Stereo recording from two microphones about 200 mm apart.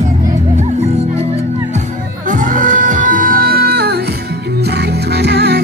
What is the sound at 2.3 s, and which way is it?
Music, 40° right (ahead or behind).